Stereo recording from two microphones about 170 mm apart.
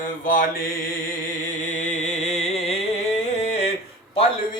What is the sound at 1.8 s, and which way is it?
Music, 40° left (ahead or behind).